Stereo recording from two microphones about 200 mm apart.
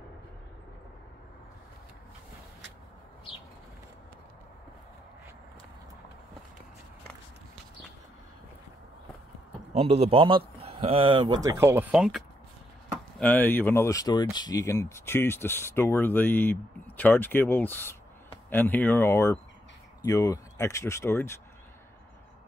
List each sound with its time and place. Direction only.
9.8 s a man's voice: 30° right (ahead or behind); by 12.3 s centre (ahead or behind)
13.2 s speech: 10° left (ahead or behind)